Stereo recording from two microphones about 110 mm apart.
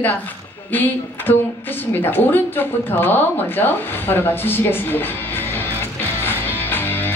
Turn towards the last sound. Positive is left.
turn(degrees=20)  # may be behind; listen again after turning